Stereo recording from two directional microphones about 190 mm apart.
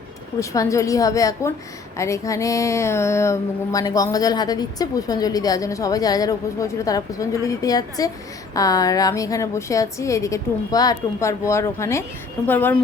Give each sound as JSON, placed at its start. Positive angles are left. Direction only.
{"t": 0.3, "sound": "a woman's voice", "side_deg": 15}